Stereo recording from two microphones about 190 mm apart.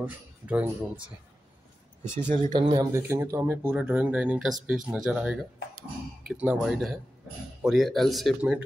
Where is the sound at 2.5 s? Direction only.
25° right (ahead or behind).